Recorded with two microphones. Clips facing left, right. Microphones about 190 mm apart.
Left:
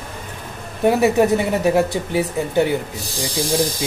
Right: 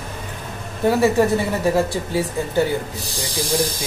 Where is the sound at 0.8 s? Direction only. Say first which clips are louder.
Left 1 dB; 20° left (ahead or behind).